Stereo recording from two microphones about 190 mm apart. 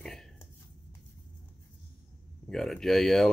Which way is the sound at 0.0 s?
Centre (ahead or behind).